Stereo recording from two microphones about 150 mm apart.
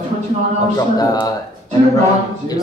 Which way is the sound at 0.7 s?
25° left (ahead or behind).